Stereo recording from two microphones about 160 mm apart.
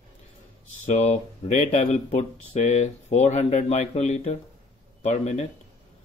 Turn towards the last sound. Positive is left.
turn(degrees=45)  # may be behind; listen again after turning